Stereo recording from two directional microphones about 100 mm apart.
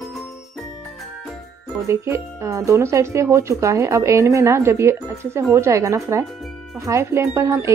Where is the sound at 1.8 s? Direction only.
30° right (ahead or behind).